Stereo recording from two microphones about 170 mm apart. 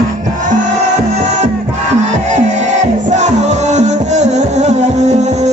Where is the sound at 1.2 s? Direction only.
45° right (ahead or behind).